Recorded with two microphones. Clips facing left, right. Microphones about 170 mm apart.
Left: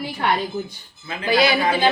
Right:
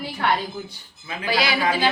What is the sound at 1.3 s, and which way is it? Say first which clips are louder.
Speech: left 4 dB; 20° left (ahead or behind).